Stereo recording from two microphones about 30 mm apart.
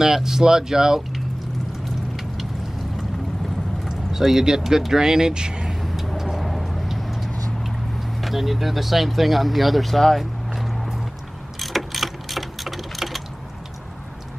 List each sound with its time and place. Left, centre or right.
0.0 s speech: centre
1.9 s a sound: centre
3.9 s speech: centre
5.8 s vehicle: centre
8.2 s speech: centre
11.6 s clock: centre